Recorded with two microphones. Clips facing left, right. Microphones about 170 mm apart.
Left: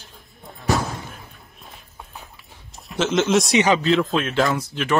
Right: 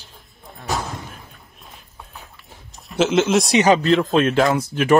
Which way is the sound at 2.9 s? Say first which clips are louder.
Right 5 dB; centre (ahead or behind).